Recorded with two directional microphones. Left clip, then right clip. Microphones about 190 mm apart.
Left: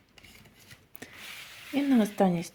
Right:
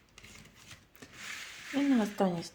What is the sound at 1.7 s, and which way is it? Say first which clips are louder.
Speech: left 3 dB; 40° left (ahead or behind).